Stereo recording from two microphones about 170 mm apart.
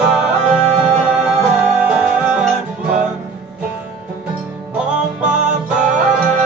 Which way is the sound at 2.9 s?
45° right (ahead or behind).